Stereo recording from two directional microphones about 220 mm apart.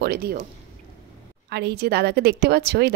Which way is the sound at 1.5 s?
50° right (ahead or behind).